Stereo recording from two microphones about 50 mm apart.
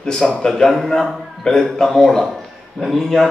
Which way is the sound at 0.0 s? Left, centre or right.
Centre.